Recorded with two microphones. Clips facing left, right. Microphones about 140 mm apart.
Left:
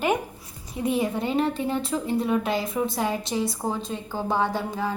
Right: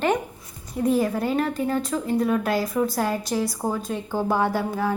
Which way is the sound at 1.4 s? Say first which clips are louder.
Right 1 dB; 25° left (ahead or behind).